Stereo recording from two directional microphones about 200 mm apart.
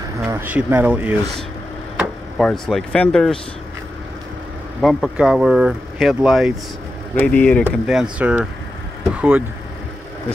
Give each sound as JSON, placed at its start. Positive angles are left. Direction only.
{"t": 0.3, "sound": "speech", "side_deg": -10}
{"t": 2.0, "sound": "speech", "side_deg": 0}
{"t": 4.8, "sound": "speech", "side_deg": 0}